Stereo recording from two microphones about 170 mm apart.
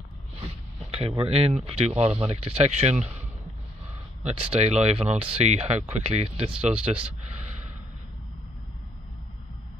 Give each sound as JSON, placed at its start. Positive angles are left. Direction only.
{"t": 0.9, "sound": "speech", "side_deg": -35}
{"t": 4.2, "sound": "speech", "side_deg": -35}